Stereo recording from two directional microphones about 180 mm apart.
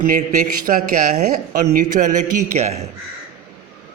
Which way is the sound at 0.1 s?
45° right (ahead or behind).